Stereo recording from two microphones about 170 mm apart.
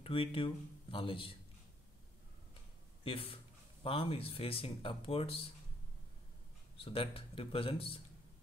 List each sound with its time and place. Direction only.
0.0 s speech: 30° left (ahead or behind)
3.0 s speech: 30° left (ahead or behind)
6.8 s speech: 30° left (ahead or behind)